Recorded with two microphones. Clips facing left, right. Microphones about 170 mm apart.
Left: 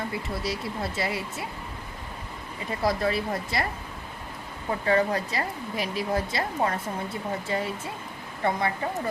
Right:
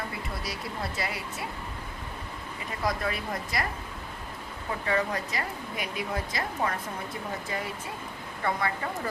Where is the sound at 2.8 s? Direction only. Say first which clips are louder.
Left 5 dB; 30° left (ahead or behind).